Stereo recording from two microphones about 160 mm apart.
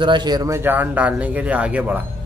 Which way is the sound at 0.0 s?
30° right (ahead or behind).